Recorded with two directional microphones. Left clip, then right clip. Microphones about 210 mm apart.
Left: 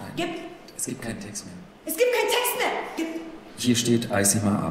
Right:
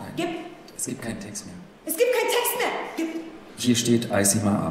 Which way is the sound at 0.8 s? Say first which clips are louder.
Right 1 dB; centre (ahead or behind).